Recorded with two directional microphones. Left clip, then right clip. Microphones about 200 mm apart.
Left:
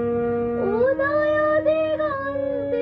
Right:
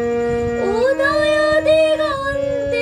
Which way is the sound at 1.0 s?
15° right (ahead or behind).